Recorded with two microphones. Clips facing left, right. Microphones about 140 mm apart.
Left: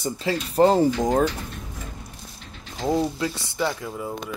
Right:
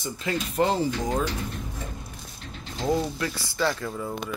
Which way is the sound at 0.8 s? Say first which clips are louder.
Left 6 dB; 50° left (ahead or behind).